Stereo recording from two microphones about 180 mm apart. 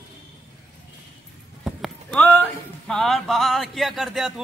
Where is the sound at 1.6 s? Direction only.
Centre (ahead or behind).